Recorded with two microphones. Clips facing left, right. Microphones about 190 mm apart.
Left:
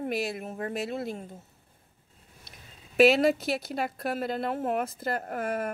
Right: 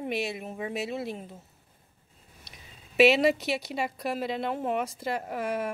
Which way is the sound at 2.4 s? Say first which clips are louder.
Even; centre (ahead or behind).